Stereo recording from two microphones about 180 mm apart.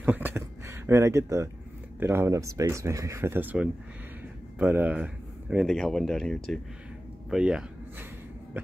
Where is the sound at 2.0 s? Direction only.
15° right (ahead or behind).